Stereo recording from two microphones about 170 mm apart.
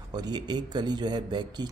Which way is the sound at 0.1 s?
25° right (ahead or behind).